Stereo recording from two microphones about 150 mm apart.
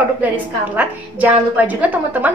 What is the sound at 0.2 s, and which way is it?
A woman's voice, 10° right (ahead or behind).